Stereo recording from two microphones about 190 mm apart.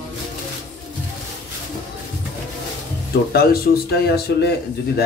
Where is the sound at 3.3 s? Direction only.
55° left (ahead or behind).